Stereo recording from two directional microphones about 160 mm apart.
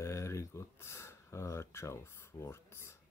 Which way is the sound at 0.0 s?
15° left (ahead or behind).